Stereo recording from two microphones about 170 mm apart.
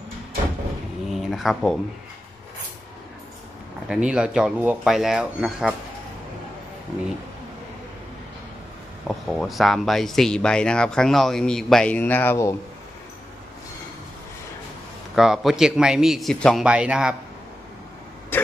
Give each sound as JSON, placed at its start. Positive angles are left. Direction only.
{"t": 1.1, "sound": "a sound", "side_deg": 0}
{"t": 3.9, "sound": "speech", "side_deg": -5}
{"t": 9.0, "sound": "speech", "side_deg": 0}
{"t": 15.1, "sound": "speech", "side_deg": -5}